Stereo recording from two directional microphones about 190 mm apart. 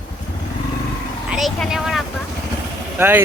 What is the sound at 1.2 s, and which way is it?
Vehicle, centre (ahead or behind).